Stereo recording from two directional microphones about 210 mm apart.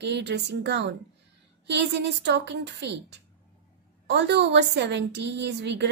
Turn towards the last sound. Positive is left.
turn(degrees=-55)  # may be behind; listen again after turning